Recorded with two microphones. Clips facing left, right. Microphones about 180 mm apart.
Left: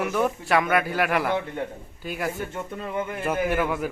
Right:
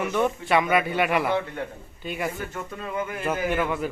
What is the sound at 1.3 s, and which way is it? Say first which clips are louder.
Speech: even; 20° left (ahead or behind).